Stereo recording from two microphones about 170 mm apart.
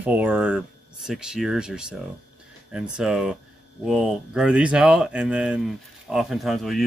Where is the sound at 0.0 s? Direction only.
10° right (ahead or behind).